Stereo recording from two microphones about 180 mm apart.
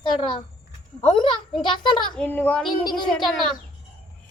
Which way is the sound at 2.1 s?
10° left (ahead or behind).